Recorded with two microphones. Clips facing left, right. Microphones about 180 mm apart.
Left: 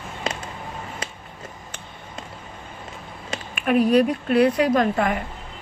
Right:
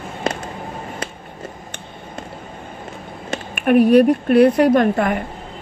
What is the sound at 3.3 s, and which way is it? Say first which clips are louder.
Speech: right 6 dB; 60° right (ahead or behind).